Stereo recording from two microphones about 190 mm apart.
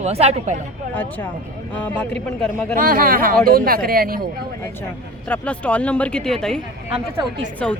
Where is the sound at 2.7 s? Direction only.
50° right (ahead or behind).